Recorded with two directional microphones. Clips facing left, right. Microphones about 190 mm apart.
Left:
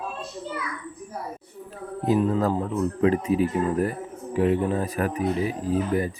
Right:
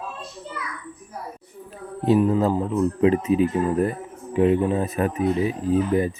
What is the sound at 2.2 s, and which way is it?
Speech, 10° right (ahead or behind).